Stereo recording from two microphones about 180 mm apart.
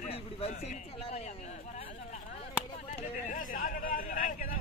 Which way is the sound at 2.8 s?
45° left (ahead or behind).